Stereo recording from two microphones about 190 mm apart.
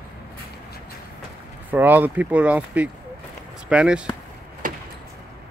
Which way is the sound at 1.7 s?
10° right (ahead or behind).